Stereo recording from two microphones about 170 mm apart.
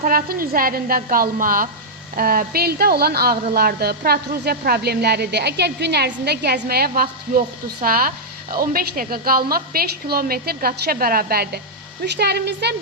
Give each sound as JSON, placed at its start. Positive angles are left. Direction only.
{"t": 0.0, "sound": "a woman's voice", "side_deg": -55}
{"t": 12.0, "sound": "a woman's voice", "side_deg": -75}